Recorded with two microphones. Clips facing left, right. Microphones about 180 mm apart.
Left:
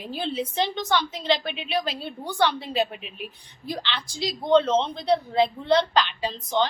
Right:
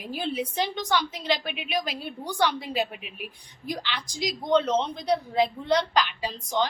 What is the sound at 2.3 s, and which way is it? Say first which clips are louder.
Speech: left 2 dB; 10° right (ahead or behind).